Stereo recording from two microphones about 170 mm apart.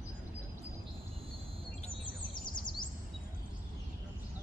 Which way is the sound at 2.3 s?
25° left (ahead or behind).